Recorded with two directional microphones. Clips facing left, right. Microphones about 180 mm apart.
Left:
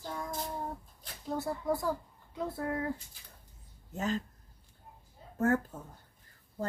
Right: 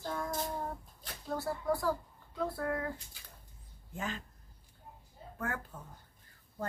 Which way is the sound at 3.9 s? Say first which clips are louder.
Left 6 dB; 40° left (ahead or behind).